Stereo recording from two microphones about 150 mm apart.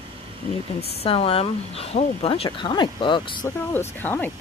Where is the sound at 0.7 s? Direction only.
40° left (ahead or behind).